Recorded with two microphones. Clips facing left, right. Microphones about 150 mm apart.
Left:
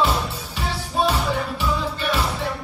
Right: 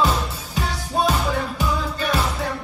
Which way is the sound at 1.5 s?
45° right (ahead or behind).